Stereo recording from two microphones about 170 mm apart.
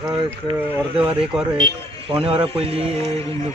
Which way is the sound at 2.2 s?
35° right (ahead or behind).